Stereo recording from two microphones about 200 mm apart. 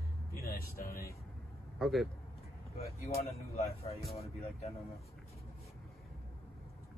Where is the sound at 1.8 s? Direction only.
Centre (ahead or behind).